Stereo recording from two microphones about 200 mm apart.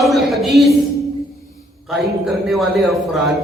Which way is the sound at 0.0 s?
Centre (ahead or behind).